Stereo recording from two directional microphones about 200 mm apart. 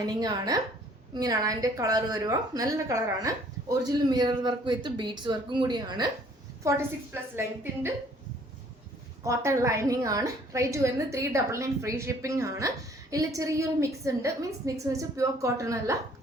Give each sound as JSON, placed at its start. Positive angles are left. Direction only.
{"t": 0.0, "sound": "a woman's voice", "side_deg": -20}
{"t": 9.2, "sound": "a woman's voice", "side_deg": -15}